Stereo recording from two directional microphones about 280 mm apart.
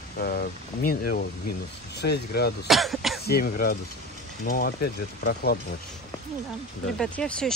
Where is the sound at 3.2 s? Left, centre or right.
Left.